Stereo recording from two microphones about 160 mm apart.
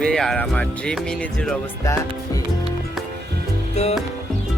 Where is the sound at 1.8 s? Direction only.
20° left (ahead or behind).